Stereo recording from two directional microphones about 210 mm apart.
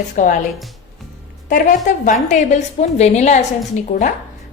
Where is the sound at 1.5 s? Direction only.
40° left (ahead or behind).